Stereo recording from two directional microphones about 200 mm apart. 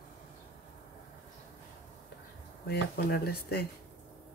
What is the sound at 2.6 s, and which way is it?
Speech, 50° left (ahead or behind).